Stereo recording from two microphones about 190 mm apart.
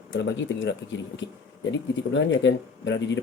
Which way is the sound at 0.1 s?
70° left (ahead or behind).